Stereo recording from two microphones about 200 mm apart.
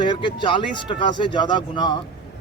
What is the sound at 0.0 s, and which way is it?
A man's voice, 25° left (ahead or behind).